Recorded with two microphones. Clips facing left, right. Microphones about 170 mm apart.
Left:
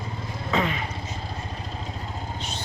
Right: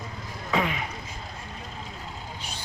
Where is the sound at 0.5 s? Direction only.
10° right (ahead or behind).